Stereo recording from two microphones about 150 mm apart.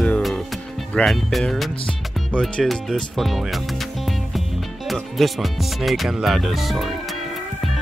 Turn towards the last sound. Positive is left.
turn(degrees=0)  # may be behind; listen again after turning